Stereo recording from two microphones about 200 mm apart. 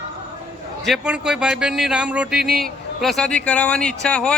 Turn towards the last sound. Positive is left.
turn(degrees=5)  # may be behind; listen again after turning